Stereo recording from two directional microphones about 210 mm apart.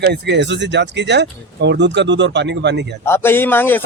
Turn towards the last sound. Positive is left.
turn(degrees=10)  # may be behind; listen again after turning